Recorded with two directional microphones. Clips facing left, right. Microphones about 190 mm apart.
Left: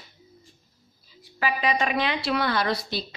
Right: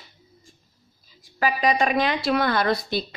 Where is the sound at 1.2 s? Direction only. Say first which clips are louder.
Right 4 dB; 45° right (ahead or behind).